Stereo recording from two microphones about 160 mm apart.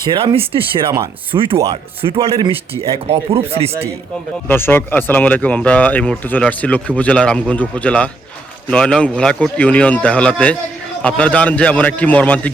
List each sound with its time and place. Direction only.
0.1 s speech: 30° right (ahead or behind)
4.4 s speech: 15° left (ahead or behind)